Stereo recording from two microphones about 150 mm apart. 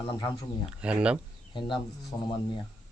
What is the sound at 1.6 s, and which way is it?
Speech, 30° left (ahead or behind).